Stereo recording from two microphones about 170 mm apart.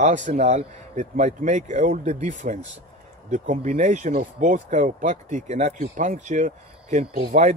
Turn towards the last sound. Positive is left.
turn(degrees=-45)  # may be behind; listen again after turning